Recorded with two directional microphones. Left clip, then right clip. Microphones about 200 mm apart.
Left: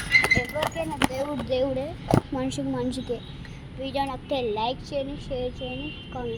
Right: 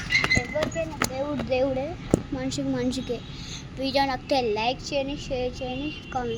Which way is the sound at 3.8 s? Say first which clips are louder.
Right 4 dB; 25° right (ahead or behind).